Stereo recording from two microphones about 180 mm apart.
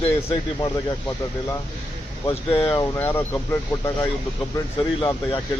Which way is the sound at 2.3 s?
30° left (ahead or behind).